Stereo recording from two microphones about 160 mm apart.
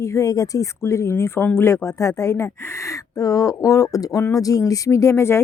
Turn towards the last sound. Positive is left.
turn(degrees=15)  # may be behind; listen again after turning